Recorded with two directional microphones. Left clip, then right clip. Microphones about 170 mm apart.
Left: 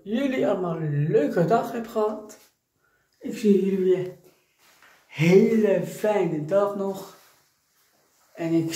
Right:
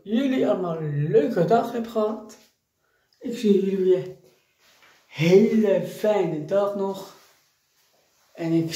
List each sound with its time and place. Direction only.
0.0 s speech: 10° right (ahead or behind)
5.1 s speech: 10° right (ahead or behind)
8.4 s speech: 10° right (ahead or behind)